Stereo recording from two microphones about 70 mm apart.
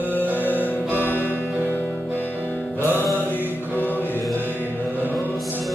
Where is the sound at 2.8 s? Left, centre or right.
Left.